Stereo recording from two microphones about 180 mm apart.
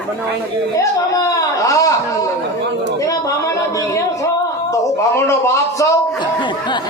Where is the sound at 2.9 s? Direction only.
20° left (ahead or behind).